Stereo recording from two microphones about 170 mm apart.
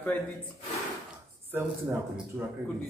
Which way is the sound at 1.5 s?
15° right (ahead or behind).